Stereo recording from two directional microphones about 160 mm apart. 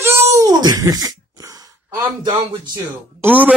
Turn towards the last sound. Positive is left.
turn(degrees=-10)  # may be behind; listen again after turning